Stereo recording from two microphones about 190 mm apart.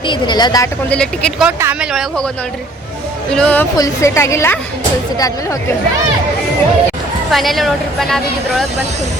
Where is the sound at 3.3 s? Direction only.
5° left (ahead or behind).